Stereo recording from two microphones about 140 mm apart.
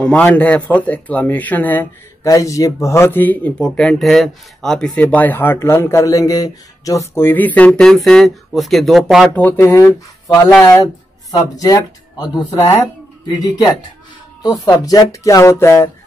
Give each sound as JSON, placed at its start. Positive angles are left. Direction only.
{"t": 0.0, "sound": "speech", "side_deg": 10}
{"t": 2.2, "sound": "speech", "side_deg": 25}
{"t": 9.3, "sound": "speech", "side_deg": 15}